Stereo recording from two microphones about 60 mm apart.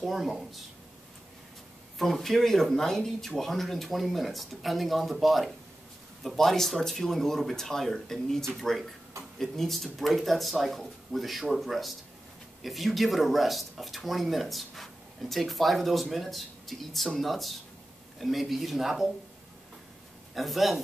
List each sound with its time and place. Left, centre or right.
0.0 s speech: centre
2.0 s speech: centre
20.3 s speech: centre